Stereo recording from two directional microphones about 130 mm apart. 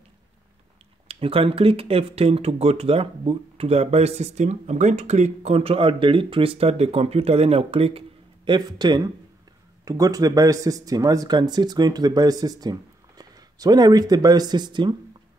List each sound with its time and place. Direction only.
1.0 s speech: 45° right (ahead or behind)
8.5 s speech: 35° right (ahead or behind)